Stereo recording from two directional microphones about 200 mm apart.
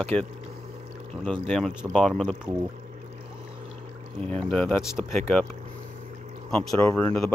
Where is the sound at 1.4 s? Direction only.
5° left (ahead or behind).